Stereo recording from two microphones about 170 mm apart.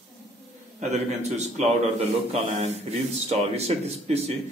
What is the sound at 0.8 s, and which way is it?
Speech, 40° right (ahead or behind).